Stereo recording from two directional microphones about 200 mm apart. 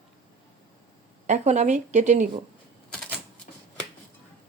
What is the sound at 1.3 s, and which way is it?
Speech, 35° right (ahead or behind).